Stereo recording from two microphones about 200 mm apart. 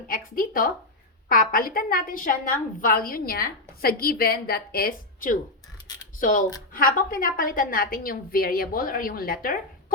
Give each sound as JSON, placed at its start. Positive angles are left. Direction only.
{"t": 0.1, "sound": "a woman's voice", "side_deg": 45}